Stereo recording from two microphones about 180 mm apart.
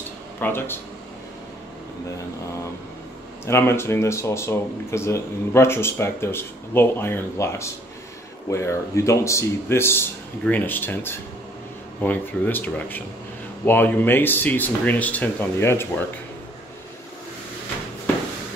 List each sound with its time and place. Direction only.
0.4 s speech: 10° left (ahead or behind)
3.4 s speech: 15° left (ahead or behind)